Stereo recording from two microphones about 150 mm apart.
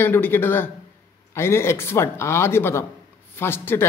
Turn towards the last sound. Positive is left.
turn(degrees=15)  # may be behind; listen again after turning